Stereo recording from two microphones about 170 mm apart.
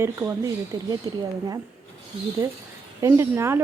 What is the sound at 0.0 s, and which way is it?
Speech, 15° right (ahead or behind).